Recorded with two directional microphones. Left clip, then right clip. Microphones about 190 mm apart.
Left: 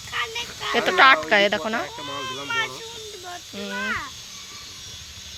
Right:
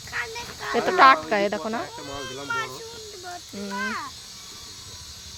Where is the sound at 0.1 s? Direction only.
60° right (ahead or behind).